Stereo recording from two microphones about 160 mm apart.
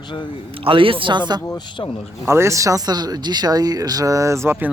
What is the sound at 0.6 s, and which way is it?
Speech, 35° right (ahead or behind).